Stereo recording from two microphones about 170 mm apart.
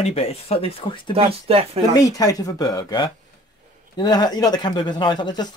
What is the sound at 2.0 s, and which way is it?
Speech, 20° left (ahead or behind).